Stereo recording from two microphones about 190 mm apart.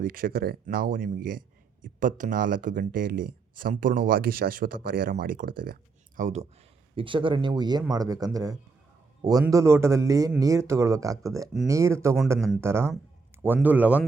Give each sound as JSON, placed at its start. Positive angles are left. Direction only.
{"t": 0.0, "sound": "speech", "side_deg": -50}
{"t": 6.9, "sound": "speech", "side_deg": -25}